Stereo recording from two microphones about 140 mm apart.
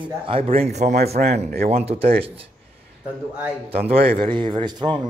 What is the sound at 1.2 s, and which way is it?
Speech, 90° right.